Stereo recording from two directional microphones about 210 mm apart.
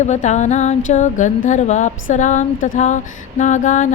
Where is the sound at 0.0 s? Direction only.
35° left (ahead or behind).